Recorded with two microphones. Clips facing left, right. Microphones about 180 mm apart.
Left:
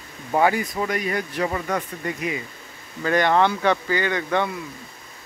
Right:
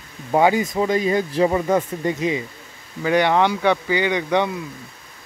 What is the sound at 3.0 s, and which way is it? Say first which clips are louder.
Speech: right 2 dB; 15° right (ahead or behind).